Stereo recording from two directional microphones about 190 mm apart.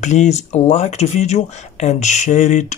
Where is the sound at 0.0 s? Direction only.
40° left (ahead or behind).